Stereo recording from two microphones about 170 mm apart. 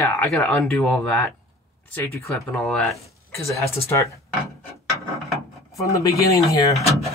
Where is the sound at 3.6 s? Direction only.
15° left (ahead or behind).